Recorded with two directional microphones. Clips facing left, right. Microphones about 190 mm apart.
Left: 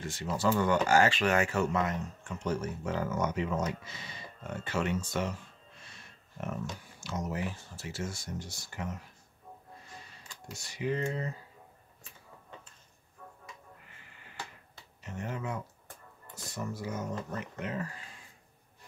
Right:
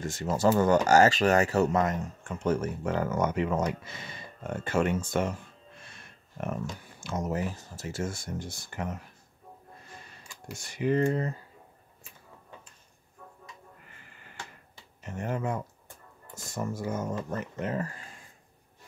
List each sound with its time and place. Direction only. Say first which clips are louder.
0.0 s speech: right 5 dB; 45° right (ahead or behind)
6.4 s speech: right 3 dB; 55° right (ahead or behind)
10.5 s speech: right 6 dB; 50° right (ahead or behind)
15.0 s speech: right 5 dB; 50° right (ahead or behind)